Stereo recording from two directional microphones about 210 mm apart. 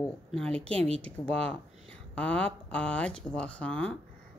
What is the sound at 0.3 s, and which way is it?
Speech, 5° left (ahead or behind).